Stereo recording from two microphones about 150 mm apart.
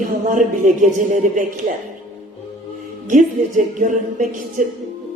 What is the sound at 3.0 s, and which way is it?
Speech, 60° right (ahead or behind).